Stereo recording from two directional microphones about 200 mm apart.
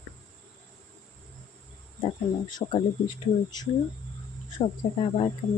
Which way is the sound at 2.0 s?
25° left (ahead or behind).